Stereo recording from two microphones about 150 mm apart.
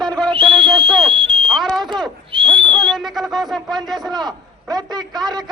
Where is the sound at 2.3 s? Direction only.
35° right (ahead or behind).